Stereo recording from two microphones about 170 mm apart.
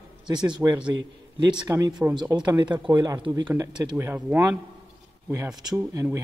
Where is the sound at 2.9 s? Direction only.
25° right (ahead or behind).